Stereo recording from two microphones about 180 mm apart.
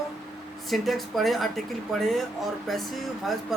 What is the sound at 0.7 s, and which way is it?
Speech, centre (ahead or behind).